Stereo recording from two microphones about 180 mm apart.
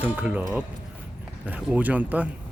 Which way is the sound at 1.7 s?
10° right (ahead or behind).